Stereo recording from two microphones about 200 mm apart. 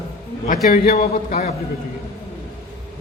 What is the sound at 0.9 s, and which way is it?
Speech, 35° left (ahead or behind).